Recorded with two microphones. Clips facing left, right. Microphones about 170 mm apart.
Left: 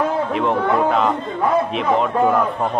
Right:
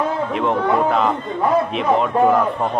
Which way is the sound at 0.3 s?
Centre (ahead or behind).